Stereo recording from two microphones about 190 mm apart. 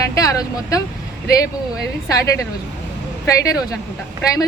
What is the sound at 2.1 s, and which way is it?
Speech, 15° left (ahead or behind).